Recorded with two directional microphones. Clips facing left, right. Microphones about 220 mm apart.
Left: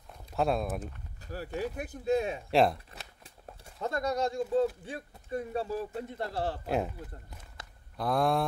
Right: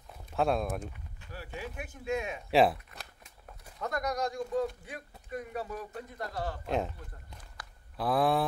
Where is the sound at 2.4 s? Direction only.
Centre (ahead or behind).